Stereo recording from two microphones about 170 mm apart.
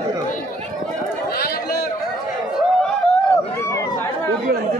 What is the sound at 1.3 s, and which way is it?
Chatter, 60° left (ahead or behind).